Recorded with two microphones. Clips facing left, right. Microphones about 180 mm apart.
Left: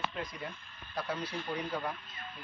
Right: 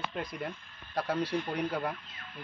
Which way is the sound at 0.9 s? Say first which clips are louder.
Right 6 dB; 65° right (ahead or behind).